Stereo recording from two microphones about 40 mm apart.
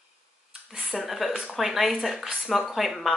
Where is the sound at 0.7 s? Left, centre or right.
Centre.